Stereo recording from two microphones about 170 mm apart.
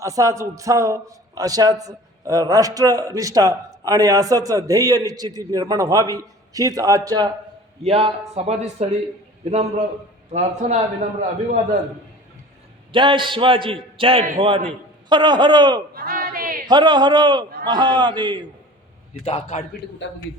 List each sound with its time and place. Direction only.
0.0 s a man's voice: 20° right (ahead or behind)
7.9 s a man's voice: 35° right (ahead or behind)
12.9 s a man's voice: 30° right (ahead or behind)
16.0 s battle cry: 60° right (ahead or behind)
16.6 s a man's voice: 25° right (ahead or behind)
19.2 s a man's voice: 35° left (ahead or behind)